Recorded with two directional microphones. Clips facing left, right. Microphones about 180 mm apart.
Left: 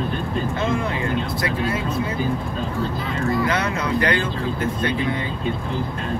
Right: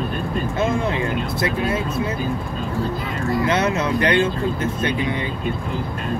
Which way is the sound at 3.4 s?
25° right (ahead or behind).